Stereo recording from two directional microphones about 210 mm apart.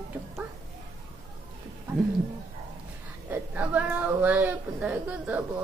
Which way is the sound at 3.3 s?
5° right (ahead or behind).